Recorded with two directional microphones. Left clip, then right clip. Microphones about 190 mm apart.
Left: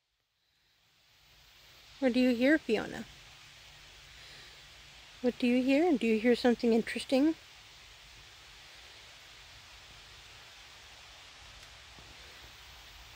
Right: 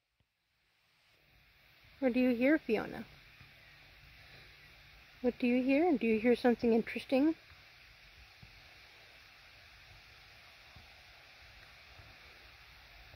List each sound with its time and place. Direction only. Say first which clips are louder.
2.0 s speech: left 3 dB; 5° left (ahead or behind)
5.2 s speech: left 2 dB; 5° left (ahead or behind)